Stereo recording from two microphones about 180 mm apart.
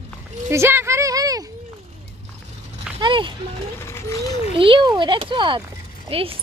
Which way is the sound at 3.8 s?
15° left (ahead or behind).